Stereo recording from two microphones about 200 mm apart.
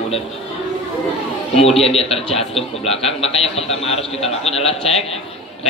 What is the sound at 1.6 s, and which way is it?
A man's voice, 30° left (ahead or behind).